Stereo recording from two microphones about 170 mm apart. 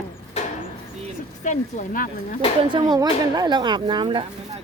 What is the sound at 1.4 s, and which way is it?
Speech, 45° left (ahead or behind).